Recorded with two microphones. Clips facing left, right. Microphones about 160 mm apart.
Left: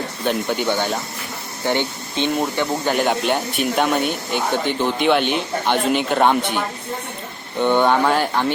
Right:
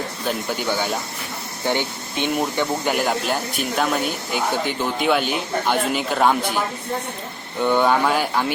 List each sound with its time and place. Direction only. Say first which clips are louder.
0.3 s speech: left 4 dB; 5° right (ahead or behind)
1.6 s speech: left 2 dB; 15° left (ahead or behind)
2.2 s speech: left 1 dB; 15° right (ahead or behind)
3.0 s speech: left 3 dB; centre (ahead or behind)
7.8 s speech: left 1 dB; 5° right (ahead or behind)